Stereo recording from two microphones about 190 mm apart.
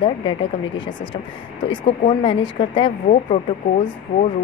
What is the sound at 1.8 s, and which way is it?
Speech, 30° left (ahead or behind).